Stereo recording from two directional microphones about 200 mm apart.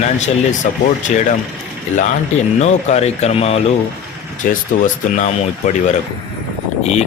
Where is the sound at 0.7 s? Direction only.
40° left (ahead or behind).